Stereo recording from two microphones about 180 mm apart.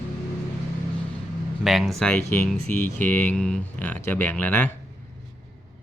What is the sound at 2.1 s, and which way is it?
Speech, 15° left (ahead or behind).